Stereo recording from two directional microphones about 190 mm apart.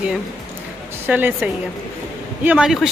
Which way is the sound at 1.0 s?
10° right (ahead or behind).